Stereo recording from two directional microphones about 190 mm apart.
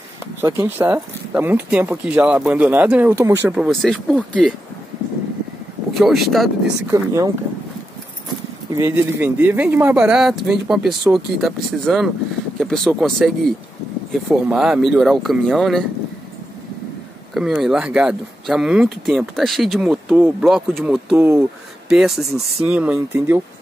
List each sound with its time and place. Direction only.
0.4 s speech: 10° right (ahead or behind); by 4.6 s 5° left (ahead or behind)
5.9 s speech: centre (ahead or behind)
6.9 s speech: 15° right (ahead or behind)
8.7 s speech: 15° right (ahead or behind)
17.3 s speech: centre (ahead or behind)
21.2 s speech: 15° right (ahead or behind)
21.8 s speech: centre (ahead or behind)